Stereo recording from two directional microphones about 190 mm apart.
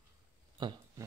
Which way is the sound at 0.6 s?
25° right (ahead or behind).